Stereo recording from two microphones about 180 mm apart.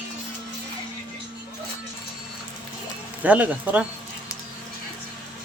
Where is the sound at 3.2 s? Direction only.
10° right (ahead or behind).